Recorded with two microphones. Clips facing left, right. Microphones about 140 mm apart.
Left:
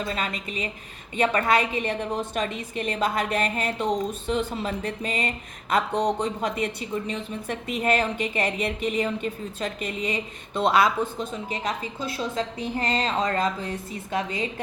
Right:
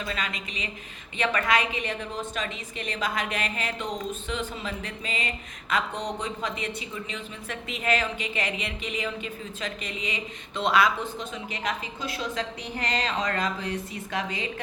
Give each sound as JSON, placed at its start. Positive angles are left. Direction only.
{"t": 0.1, "sound": "a woman's voice", "side_deg": 35}
{"t": 2.4, "sound": "a woman's voice", "side_deg": 45}
{"t": 9.8, "sound": "a woman's voice", "side_deg": 50}
{"t": 10.7, "sound": "a woman's voice", "side_deg": 30}